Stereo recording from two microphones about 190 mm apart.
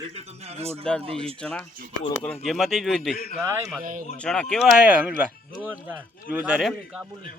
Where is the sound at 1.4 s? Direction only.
5° left (ahead or behind).